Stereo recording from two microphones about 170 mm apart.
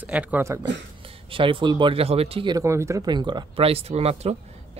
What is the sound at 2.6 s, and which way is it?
Speech, 15° right (ahead or behind).